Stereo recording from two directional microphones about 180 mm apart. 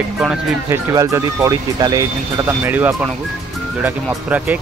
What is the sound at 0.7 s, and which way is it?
Speech, 20° right (ahead or behind).